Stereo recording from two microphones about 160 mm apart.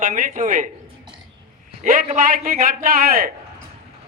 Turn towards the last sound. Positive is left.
turn(degrees=-65)  # may be behind; listen again after turning